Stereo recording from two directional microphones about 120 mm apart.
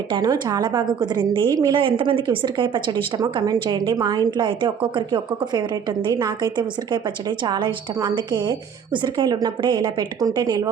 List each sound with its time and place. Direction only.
0.1 s a woman's voice: 35° right (ahead or behind)